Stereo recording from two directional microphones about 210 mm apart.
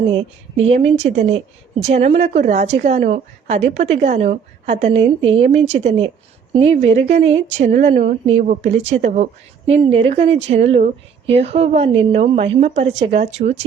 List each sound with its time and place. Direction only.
0.1 s a woman's voice: 25° right (ahead or behind)